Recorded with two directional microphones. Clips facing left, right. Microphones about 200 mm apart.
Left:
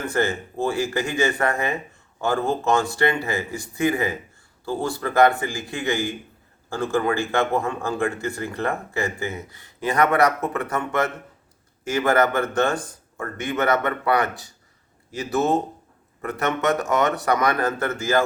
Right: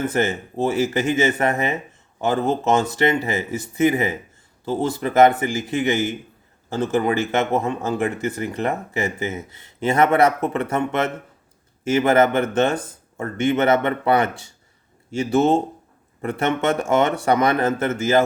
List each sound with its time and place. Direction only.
0.0 s speech: 20° right (ahead or behind)